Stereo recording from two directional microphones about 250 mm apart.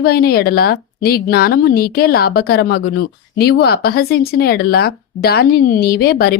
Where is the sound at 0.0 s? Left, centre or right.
Left.